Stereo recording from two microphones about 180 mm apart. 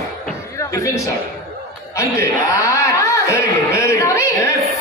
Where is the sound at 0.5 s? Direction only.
15° left (ahead or behind).